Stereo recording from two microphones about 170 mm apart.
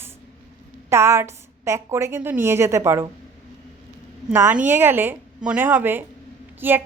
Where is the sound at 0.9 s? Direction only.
15° right (ahead or behind).